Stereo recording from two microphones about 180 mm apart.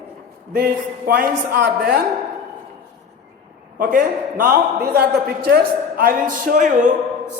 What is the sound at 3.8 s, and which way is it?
A man's voice, 50° right (ahead or behind).